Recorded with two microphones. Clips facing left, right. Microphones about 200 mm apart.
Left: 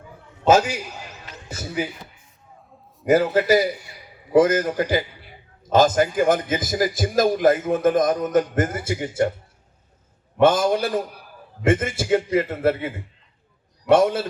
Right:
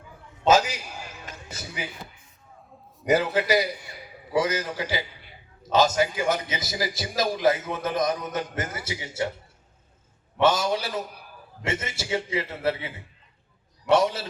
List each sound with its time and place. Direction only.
0.4 s a man's voice: 50° left (ahead or behind)
3.1 s a man's voice: 50° left (ahead or behind)
10.4 s a man's voice: 50° left (ahead or behind)
13.9 s a man's voice: 50° left (ahead or behind)